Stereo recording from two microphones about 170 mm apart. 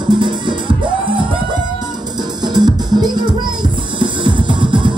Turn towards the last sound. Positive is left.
turn(degrees=-30)  # may be behind; listen again after turning